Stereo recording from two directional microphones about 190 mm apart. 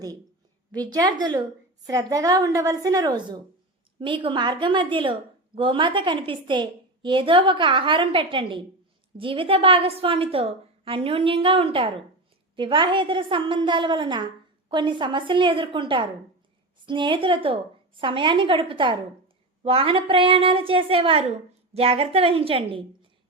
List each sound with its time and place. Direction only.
0.7 s a woman's voice: 20° right (ahead or behind)